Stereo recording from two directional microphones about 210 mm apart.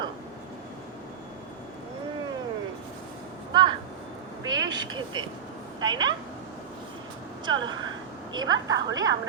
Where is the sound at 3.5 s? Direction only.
20° right (ahead or behind).